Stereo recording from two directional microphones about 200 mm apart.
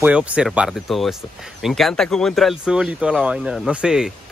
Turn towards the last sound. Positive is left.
turn(degrees=-5)  # may be behind; listen again after turning